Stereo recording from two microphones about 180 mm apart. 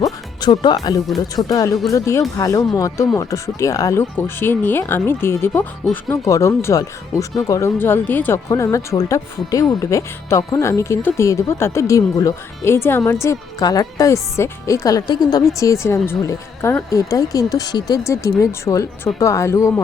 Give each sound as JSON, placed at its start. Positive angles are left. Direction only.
{"t": 0.0, "sound": "speech", "side_deg": 20}